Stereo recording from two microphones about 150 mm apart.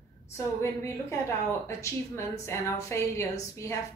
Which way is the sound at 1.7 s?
20° left (ahead or behind).